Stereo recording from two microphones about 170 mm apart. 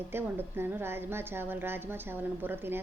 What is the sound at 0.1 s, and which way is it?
A woman's voice, 15° right (ahead or behind).